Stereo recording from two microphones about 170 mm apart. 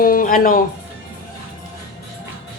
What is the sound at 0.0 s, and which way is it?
Music, 55° left (ahead or behind).